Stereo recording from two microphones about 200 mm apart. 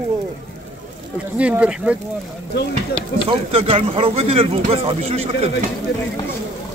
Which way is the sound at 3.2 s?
25° right (ahead or behind).